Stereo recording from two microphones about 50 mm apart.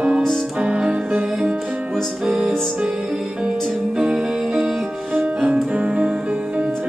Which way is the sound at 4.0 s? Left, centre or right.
Centre.